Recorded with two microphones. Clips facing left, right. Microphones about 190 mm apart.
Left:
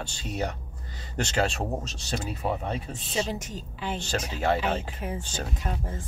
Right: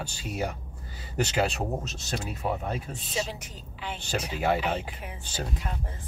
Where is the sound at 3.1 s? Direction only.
45° left (ahead or behind).